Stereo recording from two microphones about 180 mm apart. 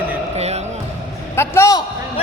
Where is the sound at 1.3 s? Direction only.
15° left (ahead or behind).